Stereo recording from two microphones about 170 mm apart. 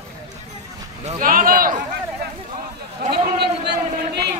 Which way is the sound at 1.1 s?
55° right (ahead or behind).